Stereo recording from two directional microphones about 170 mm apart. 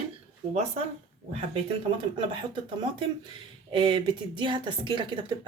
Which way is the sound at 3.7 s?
30° right (ahead or behind).